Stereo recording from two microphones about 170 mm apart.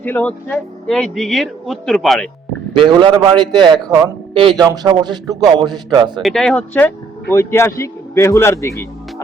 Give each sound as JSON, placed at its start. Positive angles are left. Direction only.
{"t": 0.0, "sound": "speech", "side_deg": 10}
{"t": 2.7, "sound": "a man's voice", "side_deg": -30}
{"t": 6.2, "sound": "speech", "side_deg": 5}